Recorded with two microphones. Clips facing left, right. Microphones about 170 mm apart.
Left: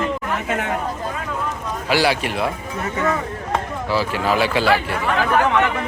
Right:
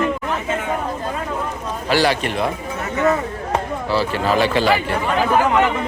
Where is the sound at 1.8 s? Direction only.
10° left (ahead or behind).